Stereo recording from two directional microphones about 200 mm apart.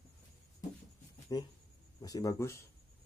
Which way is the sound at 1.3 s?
20° left (ahead or behind).